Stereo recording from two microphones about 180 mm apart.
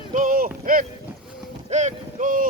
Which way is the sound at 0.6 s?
50° right (ahead or behind).